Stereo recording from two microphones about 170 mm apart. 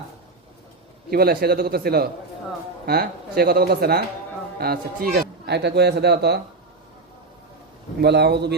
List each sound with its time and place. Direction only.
1.1 s a man's voice: 65° right (ahead or behind)
8.0 s a man's voice: 80° right